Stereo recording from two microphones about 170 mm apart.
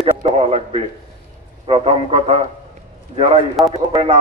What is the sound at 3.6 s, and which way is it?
Speech, 35° right (ahead or behind).